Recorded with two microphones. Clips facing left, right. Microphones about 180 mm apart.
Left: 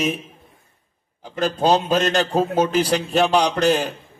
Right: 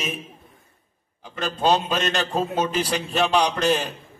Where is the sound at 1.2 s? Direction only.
40° left (ahead or behind).